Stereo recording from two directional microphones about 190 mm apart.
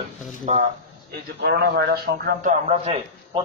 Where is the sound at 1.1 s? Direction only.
55° right (ahead or behind).